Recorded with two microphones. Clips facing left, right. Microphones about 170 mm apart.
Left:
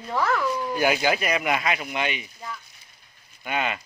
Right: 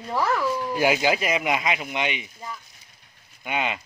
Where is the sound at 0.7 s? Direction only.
25° right (ahead or behind).